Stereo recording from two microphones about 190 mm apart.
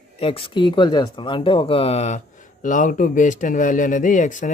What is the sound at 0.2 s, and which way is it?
Speech, 30° left (ahead or behind).